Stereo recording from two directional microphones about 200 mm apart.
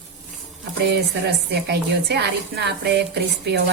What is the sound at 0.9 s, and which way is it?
A woman's voice, 55° right (ahead or behind).